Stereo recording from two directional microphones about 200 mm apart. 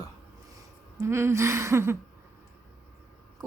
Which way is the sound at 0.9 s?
15° right (ahead or behind).